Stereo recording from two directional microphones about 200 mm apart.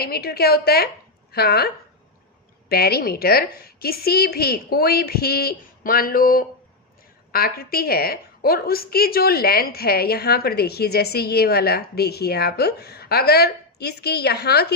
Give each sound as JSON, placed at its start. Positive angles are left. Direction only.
{"t": 0.0, "sound": "a woman's voice", "side_deg": 50}